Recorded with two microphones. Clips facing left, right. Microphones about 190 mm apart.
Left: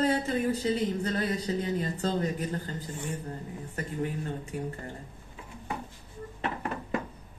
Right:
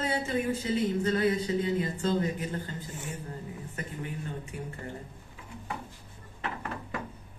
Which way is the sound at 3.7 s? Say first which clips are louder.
Left 7 dB; 35° left (ahead or behind).